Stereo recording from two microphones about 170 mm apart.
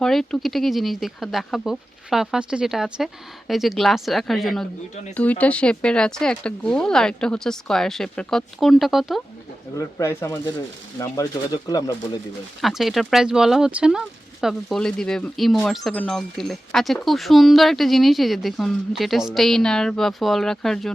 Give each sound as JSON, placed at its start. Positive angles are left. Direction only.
{"t": 0.0, "sound": "speech", "side_deg": 5}
{"t": 9.7, "sound": "speech", "side_deg": 15}
{"t": 12.6, "sound": "speech", "side_deg": 0}